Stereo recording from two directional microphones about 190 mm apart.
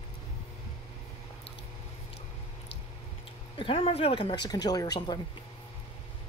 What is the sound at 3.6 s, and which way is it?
A woman's voice, 30° left (ahead or behind).